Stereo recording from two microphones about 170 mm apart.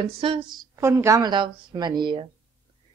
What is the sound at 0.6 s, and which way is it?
Speech, 15° right (ahead or behind).